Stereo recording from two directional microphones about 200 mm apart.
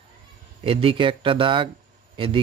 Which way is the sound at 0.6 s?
25° right (ahead or behind).